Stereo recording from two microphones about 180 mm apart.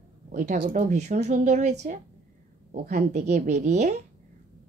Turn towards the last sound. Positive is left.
turn(degrees=-40)  # may be behind; listen again after turning